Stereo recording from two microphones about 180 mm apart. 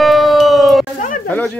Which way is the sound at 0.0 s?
Centre (ahead or behind).